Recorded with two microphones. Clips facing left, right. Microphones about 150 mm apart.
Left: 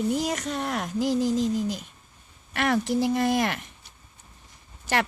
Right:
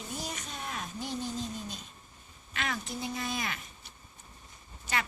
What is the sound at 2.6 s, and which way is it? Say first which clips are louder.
A woman's voice: left 13 dB; 70° left (ahead or behind).